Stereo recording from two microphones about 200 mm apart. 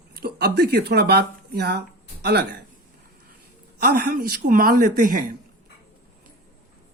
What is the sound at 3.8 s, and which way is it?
Speech, 50° right (ahead or behind).